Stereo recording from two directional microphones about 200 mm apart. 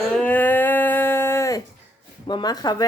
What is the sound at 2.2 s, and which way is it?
Speech, 20° left (ahead or behind).